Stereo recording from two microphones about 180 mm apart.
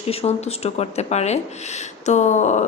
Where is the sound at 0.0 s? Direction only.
35° left (ahead or behind).